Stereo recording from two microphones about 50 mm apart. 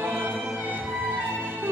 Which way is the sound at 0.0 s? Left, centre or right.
Right.